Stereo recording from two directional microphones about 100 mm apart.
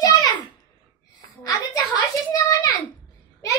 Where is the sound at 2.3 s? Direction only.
40° left (ahead or behind).